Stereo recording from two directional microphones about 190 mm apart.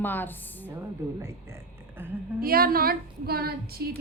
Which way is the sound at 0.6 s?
15° right (ahead or behind).